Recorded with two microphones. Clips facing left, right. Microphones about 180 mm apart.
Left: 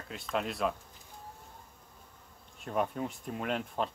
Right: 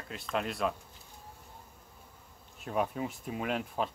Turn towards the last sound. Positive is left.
turn(degrees=-5)  # may be behind; listen again after turning